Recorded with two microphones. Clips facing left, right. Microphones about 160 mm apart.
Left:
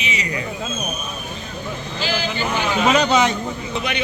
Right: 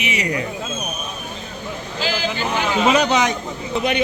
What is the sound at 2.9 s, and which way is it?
Speech, 15° right (ahead or behind).